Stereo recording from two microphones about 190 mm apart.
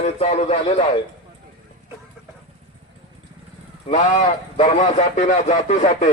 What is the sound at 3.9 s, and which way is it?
A man's voice, 40° left (ahead or behind).